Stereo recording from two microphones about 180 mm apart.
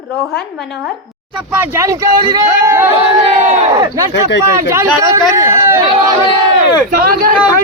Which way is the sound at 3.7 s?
20° right (ahead or behind).